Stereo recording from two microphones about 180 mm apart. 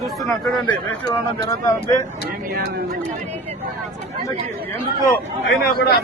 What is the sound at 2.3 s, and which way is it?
Speech, 55° right (ahead or behind).